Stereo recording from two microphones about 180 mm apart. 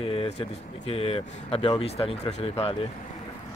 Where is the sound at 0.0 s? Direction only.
30° left (ahead or behind).